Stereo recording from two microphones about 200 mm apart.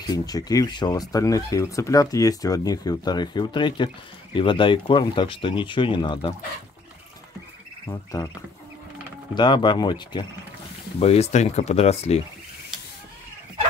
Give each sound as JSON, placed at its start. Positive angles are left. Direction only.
{"t": 0.0, "sound": "speech", "side_deg": 20}
{"t": 7.9, "sound": "speech", "side_deg": 20}
{"t": 9.3, "sound": "speech", "side_deg": 20}
{"t": 11.0, "sound": "speech", "side_deg": 30}